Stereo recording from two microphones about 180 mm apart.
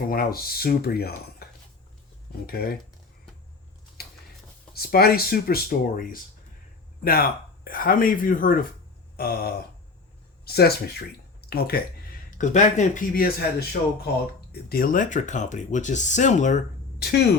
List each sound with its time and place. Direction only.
0.1 s speech: 55° left (ahead or behind)
2.5 s speech: 55° left (ahead or behind)
4.7 s speech: 60° left (ahead or behind)
12.4 s speech: 40° left (ahead or behind)
17.0 s speech: 60° left (ahead or behind)